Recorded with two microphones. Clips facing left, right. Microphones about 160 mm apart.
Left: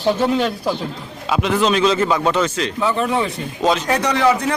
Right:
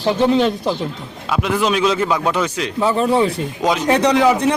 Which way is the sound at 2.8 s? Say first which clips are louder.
Right 4 dB; 35° right (ahead or behind).